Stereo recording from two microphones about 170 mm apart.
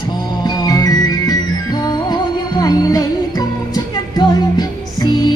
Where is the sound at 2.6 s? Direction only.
20° left (ahead or behind).